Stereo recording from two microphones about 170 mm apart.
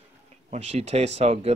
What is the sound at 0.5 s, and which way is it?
Speech, 40° right (ahead or behind).